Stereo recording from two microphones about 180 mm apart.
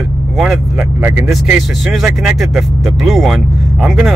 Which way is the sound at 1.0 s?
20° right (ahead or behind).